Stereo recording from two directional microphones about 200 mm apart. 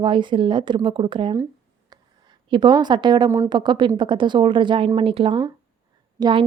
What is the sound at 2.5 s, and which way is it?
A woman's voice, 20° right (ahead or behind).